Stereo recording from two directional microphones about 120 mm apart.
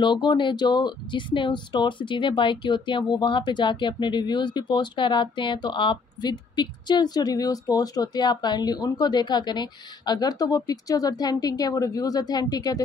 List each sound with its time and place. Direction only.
0.0 s speech: 40° left (ahead or behind)